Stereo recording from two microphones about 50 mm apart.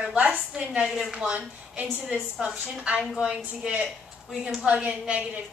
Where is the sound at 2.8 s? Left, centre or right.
Centre.